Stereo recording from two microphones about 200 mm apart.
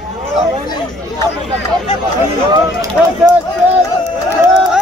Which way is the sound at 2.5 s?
20° right (ahead or behind).